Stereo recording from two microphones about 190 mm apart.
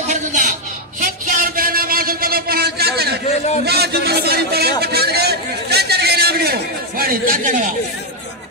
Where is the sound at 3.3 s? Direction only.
35° left (ahead or behind).